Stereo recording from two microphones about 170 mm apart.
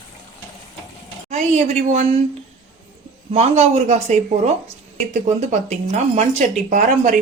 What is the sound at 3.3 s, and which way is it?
Speech, 40° right (ahead or behind).